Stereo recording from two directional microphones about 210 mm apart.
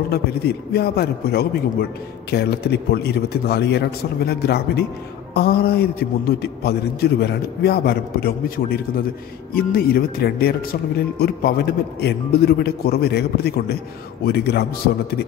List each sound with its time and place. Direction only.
0.1 s speech: 50° left (ahead or behind)